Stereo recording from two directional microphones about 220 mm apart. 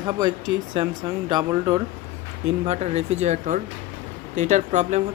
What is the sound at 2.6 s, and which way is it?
Speech, 30° right (ahead or behind).